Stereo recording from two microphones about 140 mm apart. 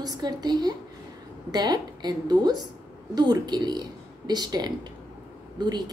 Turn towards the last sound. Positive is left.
turn(degrees=-30)  # may be behind; listen again after turning